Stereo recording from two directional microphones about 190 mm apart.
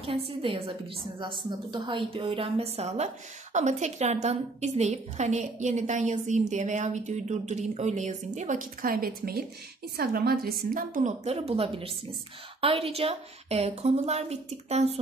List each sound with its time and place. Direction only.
0.0 s a woman's voice: 30° right (ahead or behind)